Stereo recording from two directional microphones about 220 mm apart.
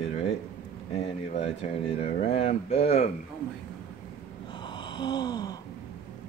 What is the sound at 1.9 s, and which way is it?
Speech, 30° left (ahead or behind).